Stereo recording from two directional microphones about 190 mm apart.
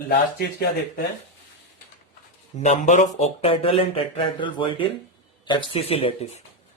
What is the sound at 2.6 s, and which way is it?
Speech, 40° left (ahead or behind).